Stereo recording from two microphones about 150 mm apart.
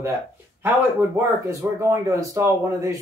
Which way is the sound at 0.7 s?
20° right (ahead or behind).